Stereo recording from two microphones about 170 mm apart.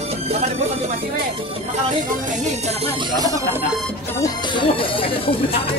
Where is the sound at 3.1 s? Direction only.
20° right (ahead or behind).